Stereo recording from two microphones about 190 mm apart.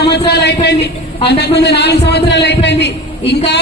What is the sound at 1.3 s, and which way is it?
A man's voice, 60° left (ahead or behind).